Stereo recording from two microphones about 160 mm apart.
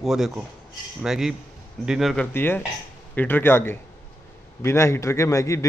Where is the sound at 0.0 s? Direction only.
5° right (ahead or behind).